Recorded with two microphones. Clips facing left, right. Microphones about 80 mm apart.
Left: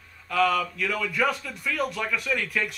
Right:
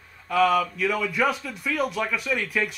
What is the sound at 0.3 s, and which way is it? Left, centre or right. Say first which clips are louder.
A man's voice: right 3 dB; centre.